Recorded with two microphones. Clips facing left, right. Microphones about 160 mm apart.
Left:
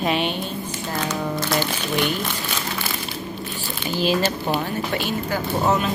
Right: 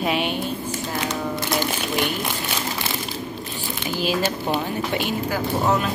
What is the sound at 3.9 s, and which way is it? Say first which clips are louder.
Speech: left 2 dB; 10° right (ahead or behind).